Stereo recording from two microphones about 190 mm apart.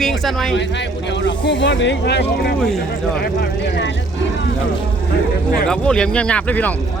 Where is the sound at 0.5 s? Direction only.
70° left (ahead or behind).